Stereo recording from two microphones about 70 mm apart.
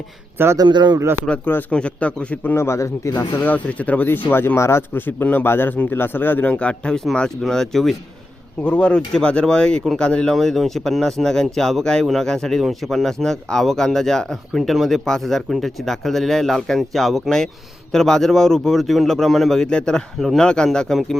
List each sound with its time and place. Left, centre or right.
0.5 s speech: right
0.9 s speech: right
1.7 s speech: centre
2.4 s speech: left
2.6 s speech: left
3.2 s speech: left
3.5 s speech: left
6.5 s speech: centre
7.4 s speech: centre
8.6 s speech: centre
10.3 s speech: centre